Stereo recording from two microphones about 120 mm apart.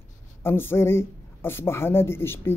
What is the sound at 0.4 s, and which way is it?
Speech, 20° left (ahead or behind).